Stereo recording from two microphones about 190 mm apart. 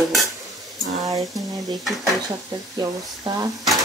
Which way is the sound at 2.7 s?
20° right (ahead or behind).